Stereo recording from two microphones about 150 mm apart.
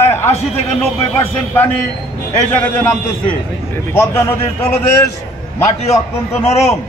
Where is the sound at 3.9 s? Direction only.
15° left (ahead or behind).